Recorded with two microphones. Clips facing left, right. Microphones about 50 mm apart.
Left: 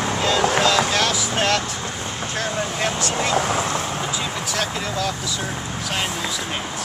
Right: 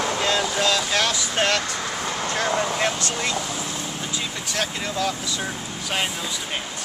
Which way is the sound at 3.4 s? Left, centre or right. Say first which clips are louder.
Left 8 dB; left.